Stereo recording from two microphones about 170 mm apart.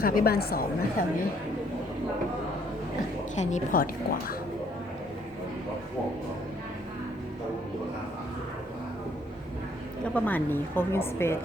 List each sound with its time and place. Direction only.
0.0 s a woman's voice: 60° left (ahead or behind)
3.3 s a woman's voice: 45° left (ahead or behind)
10.2 s a woman's voice: 10° left (ahead or behind)